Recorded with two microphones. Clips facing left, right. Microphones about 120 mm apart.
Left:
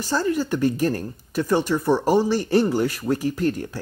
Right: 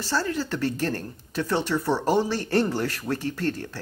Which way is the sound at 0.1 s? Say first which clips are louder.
Left 5 dB; 15° left (ahead or behind).